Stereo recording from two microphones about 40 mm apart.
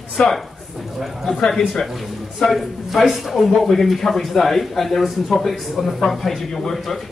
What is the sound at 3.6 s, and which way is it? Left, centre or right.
A man's voice, centre.